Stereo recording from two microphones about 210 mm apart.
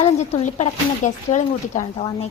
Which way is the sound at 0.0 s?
30° left (ahead or behind).